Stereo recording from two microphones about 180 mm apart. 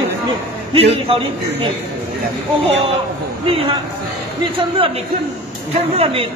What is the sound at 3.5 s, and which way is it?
Speech, 30° right (ahead or behind).